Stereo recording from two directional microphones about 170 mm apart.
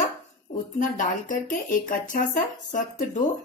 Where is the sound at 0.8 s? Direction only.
50° left (ahead or behind).